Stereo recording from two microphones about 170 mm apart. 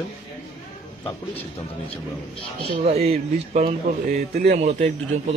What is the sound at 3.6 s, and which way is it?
Speech, 60° right (ahead or behind).